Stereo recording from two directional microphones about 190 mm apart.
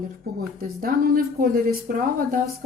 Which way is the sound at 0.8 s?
50° right (ahead or behind).